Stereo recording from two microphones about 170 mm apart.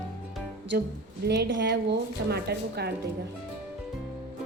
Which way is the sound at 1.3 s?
80° right.